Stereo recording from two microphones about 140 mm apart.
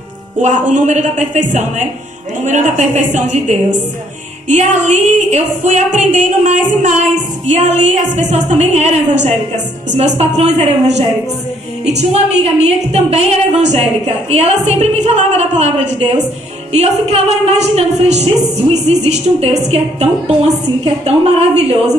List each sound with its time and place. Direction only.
0.4 s a woman's voice: 60° right (ahead or behind)